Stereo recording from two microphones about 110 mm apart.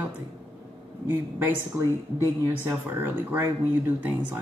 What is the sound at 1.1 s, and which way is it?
Speech, 15° right (ahead or behind).